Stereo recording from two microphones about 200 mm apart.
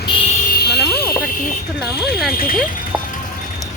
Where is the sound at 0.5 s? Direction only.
55° left (ahead or behind).